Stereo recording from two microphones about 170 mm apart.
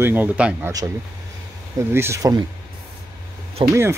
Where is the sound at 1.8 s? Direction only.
15° right (ahead or behind).